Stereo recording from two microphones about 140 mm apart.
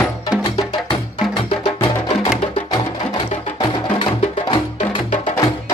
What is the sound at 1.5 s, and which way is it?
Music, 40° left (ahead or behind).